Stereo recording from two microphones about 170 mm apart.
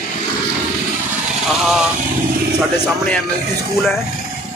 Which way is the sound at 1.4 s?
Centre (ahead or behind).